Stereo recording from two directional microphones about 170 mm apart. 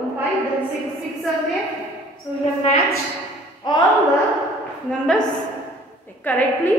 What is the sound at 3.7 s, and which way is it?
Speech, 25° left (ahead or behind).